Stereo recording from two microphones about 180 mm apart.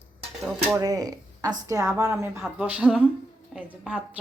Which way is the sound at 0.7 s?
20° right (ahead or behind).